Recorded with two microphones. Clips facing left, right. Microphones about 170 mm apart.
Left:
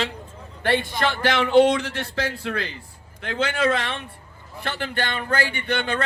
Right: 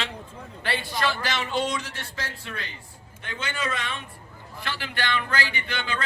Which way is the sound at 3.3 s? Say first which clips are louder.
Left 9 dB; 90° left.